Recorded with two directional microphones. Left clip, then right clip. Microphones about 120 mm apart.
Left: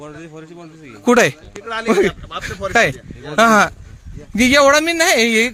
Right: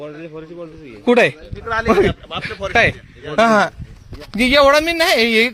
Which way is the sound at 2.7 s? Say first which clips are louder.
Even; 35° left (ahead or behind).